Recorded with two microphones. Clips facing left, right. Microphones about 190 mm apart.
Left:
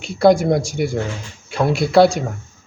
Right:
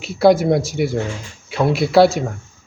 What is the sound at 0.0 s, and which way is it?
Speech, centre (ahead or behind).